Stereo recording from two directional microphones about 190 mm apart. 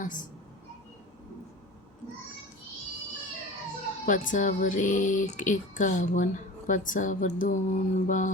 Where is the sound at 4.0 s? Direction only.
45° left (ahead or behind).